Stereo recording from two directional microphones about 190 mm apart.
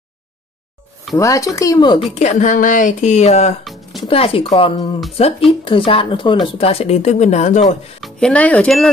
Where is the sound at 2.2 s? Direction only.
40° left (ahead or behind).